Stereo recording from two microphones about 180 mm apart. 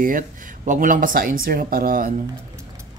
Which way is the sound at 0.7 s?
50° right (ahead or behind).